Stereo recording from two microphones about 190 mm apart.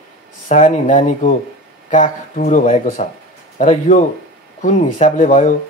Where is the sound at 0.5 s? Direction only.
40° left (ahead or behind).